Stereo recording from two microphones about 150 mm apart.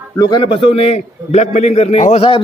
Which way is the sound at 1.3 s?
50° left (ahead or behind).